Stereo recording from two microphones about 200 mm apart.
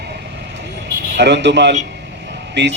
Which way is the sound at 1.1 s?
60° right (ahead or behind).